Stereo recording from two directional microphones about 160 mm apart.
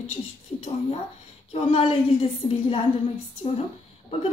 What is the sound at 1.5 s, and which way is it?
A woman's voice, 35° left (ahead or behind).